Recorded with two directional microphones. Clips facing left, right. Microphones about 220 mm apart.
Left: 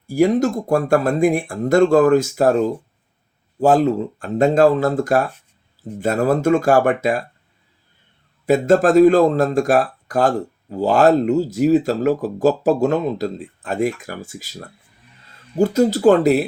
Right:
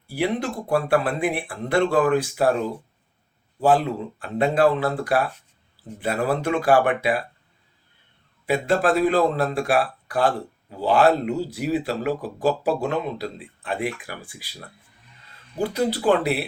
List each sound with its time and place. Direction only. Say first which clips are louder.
0.1 s speech: left 9 dB; 45° left (ahead or behind)
8.4 s speech: left 7 dB; 45° left (ahead or behind)